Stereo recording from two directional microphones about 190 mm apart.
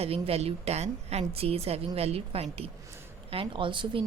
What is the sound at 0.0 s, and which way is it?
A woman's voice, 30° right (ahead or behind).